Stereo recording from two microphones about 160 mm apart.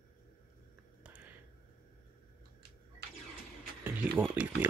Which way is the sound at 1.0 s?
10° right (ahead or behind).